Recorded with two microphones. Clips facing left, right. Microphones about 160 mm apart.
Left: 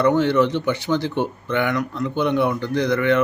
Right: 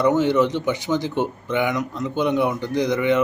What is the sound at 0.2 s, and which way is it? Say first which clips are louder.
A man's voice: left 1 dB; 15° right (ahead or behind).